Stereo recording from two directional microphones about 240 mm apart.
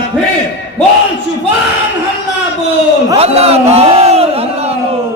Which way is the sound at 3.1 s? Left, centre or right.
Right.